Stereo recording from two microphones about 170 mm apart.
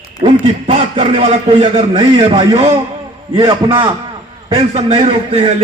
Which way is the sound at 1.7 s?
30° right (ahead or behind).